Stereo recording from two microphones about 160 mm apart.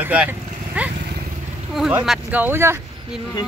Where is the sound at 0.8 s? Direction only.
10° right (ahead or behind).